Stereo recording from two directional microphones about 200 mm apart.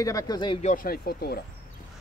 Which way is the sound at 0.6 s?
40° left (ahead or behind).